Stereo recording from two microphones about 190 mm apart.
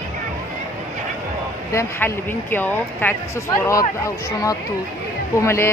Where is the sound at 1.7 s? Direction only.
15° left (ahead or behind).